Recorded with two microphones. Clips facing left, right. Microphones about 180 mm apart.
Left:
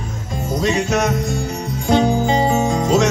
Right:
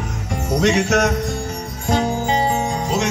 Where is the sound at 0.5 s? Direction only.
75° right (ahead or behind).